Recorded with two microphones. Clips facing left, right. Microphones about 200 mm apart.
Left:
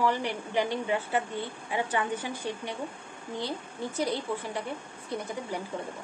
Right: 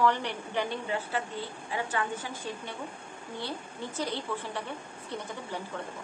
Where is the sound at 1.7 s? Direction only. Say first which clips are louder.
Left 3 dB; 15° left (ahead or behind).